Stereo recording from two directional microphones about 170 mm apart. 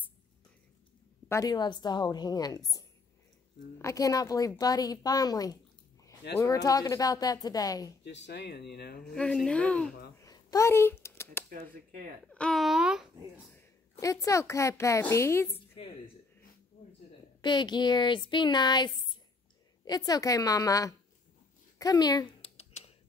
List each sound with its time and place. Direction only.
1.3 s speech: 20° left (ahead or behind)
8.0 s speech: 90° left; by 9.0 s 70° left (ahead or behind)
9.1 s speech: 5° left (ahead or behind)
10.1 s a sound: 20° left (ahead or behind)
11.5 s speech: 50° right (ahead or behind)
12.3 s speech: 5° left (ahead or behind)
13.5 s a woman's voice: 15° left (ahead or behind)
17.4 s speech: 25° left (ahead or behind)
21.7 s a sound: 20° left (ahead or behind); by 22.9 s 40° left (ahead or behind)